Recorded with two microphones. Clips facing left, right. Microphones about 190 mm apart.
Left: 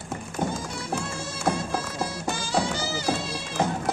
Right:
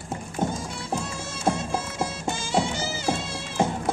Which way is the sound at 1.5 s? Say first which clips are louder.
Right 1 dB; 25° right (ahead or behind).